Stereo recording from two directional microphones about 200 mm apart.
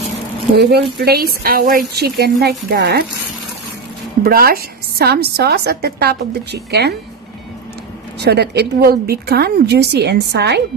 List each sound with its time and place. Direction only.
0.6 s a woman's voice: 55° right (ahead or behind)
4.2 s a woman's voice: 50° right (ahead or behind)
8.2 s a woman's voice: 55° right (ahead or behind)